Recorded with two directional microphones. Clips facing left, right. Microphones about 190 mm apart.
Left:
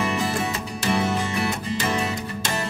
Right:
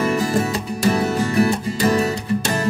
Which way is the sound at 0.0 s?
40° right (ahead or behind).